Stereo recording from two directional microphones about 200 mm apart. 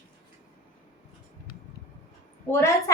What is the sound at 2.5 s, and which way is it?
Speech, 10° left (ahead or behind).